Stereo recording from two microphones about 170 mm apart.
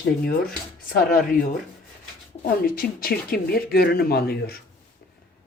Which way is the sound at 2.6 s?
60° left (ahead or behind).